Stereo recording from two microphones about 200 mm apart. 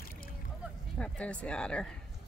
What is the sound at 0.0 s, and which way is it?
Rowboat, 45° left (ahead or behind).